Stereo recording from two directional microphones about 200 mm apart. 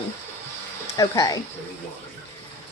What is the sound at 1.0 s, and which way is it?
Speech, 15° left (ahead or behind).